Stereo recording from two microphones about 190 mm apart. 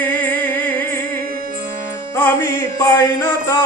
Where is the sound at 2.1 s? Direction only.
15° left (ahead or behind).